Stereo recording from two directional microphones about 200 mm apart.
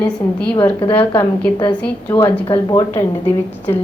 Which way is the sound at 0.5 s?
15° left (ahead or behind).